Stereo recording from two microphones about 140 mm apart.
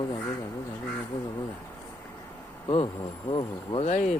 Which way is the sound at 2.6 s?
40° left (ahead or behind).